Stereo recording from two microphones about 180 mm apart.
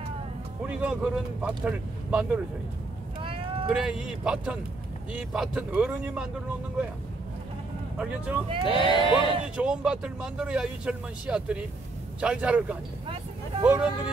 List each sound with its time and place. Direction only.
0.7 s speech: 5° right (ahead or behind)
3.2 s vehicle: 30° right (ahead or behind)
3.7 s speech: 5° right (ahead or behind)
8.5 s speech: 30° right (ahead or behind)
8.7 s speech: 25° left (ahead or behind)
9.6 s a man's voice: 5° right (ahead or behind)